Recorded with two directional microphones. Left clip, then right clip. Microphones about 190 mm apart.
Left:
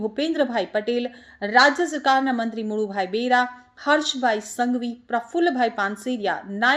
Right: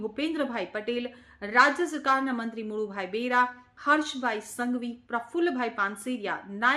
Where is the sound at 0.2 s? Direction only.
20° left (ahead or behind).